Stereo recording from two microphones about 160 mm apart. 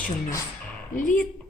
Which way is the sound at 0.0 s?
15° left (ahead or behind).